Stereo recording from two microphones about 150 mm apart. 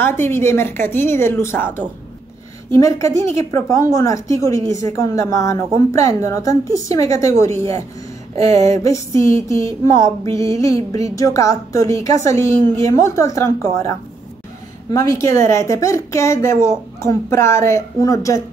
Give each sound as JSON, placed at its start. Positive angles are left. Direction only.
{"t": 0.0, "sound": "a woman's voice", "side_deg": 15}
{"t": 8.5, "sound": "a woman's voice", "side_deg": 20}